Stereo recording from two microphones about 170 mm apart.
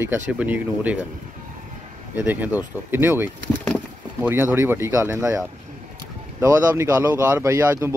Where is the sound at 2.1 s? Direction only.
10° right (ahead or behind).